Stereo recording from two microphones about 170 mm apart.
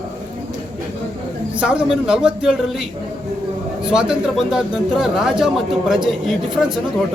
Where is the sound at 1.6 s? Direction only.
5° right (ahead or behind).